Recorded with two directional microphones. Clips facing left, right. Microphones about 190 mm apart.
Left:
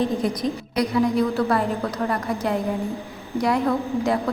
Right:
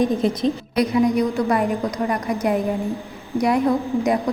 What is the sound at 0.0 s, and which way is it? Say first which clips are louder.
A woman's voice: right 4 dB; 25° right (ahead or behind).